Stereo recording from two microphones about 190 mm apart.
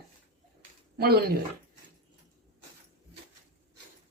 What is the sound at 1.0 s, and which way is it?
Speech, 55° right (ahead or behind).